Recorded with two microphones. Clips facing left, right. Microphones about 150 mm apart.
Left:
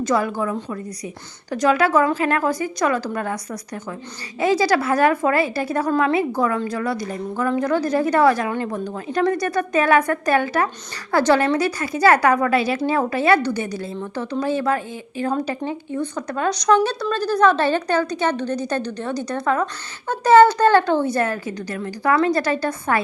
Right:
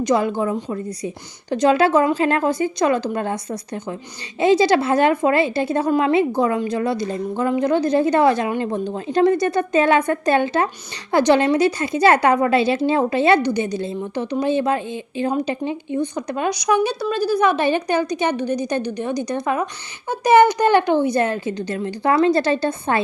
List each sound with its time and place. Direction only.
0.0 s a woman's voice: 20° right (ahead or behind)